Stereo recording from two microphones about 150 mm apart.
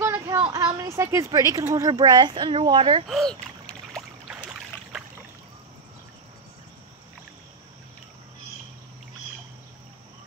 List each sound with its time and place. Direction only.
0.0 s a sound: 15° right (ahead or behind)
0.7 s speech: 20° right (ahead or behind); by 3.1 s 35° right (ahead or behind)
3.1 s rowboat: 5° left (ahead or behind)
4.3 s boat: 5° right (ahead or behind)